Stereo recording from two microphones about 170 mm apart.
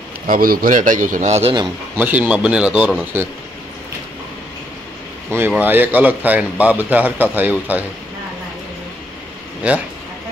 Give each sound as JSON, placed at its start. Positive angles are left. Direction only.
{"t": 0.3, "sound": "a man's voice", "side_deg": -60}
{"t": 2.0, "sound": "a man's voice", "side_deg": -10}
{"t": 5.5, "sound": "a man's voice", "side_deg": -10}
{"t": 9.6, "sound": "a man's voice", "side_deg": -10}